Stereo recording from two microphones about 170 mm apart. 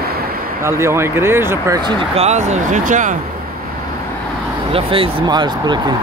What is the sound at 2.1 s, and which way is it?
Speech, 40° right (ahead or behind).